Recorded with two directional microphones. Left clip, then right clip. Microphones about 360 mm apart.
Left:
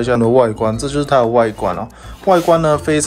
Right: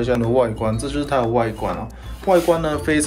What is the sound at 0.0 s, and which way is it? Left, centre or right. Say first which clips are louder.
Speech: left 6 dB; centre.